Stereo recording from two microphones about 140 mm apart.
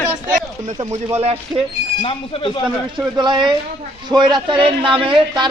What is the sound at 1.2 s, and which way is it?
Speech, 45° right (ahead or behind).